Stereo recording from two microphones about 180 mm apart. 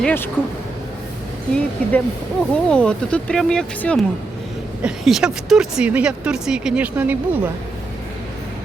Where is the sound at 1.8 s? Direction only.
5° left (ahead or behind); by 7.5 s 10° right (ahead or behind).